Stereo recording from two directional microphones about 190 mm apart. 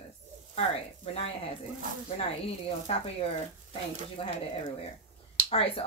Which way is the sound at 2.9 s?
30° left (ahead or behind).